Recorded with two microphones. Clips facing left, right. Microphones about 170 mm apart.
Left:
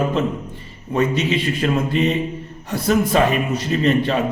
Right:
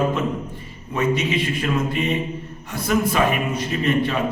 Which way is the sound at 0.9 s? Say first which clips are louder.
Left 2 dB; 30° left (ahead or behind).